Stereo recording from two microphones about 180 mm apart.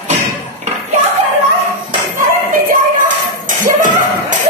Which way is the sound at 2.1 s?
50° right (ahead or behind).